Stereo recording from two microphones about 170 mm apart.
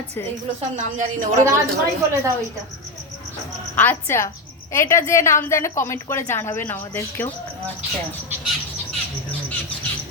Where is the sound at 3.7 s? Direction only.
10° left (ahead or behind).